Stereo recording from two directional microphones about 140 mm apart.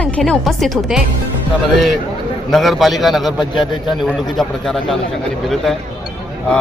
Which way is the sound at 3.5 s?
35° left (ahead or behind).